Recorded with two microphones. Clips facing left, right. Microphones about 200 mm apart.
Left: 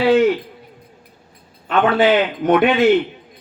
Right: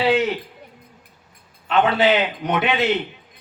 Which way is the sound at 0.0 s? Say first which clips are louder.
Left 5 dB; 50° left (ahead or behind).